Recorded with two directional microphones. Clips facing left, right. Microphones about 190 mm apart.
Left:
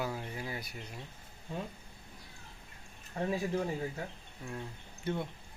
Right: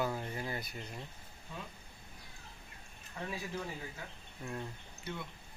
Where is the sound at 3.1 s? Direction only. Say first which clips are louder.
Left 8 dB; 35° left (ahead or behind).